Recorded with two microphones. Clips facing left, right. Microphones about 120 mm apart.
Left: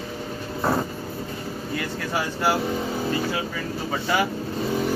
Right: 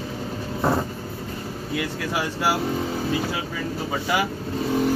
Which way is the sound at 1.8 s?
5° right (ahead or behind).